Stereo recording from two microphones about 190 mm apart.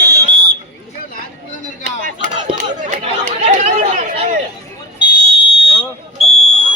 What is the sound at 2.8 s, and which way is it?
Chatter, 35° right (ahead or behind).